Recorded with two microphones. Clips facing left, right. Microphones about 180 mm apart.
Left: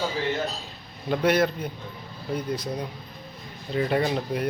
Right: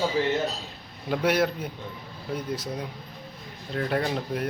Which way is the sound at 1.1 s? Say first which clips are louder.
Left 2 dB; 5° right (ahead or behind).